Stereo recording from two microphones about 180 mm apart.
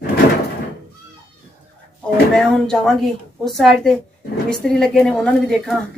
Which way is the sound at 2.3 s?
5° left (ahead or behind).